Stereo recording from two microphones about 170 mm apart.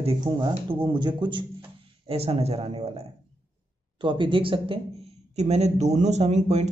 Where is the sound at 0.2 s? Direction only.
25° right (ahead or behind).